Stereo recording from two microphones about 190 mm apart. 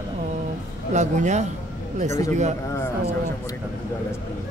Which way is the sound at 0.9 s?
40° right (ahead or behind).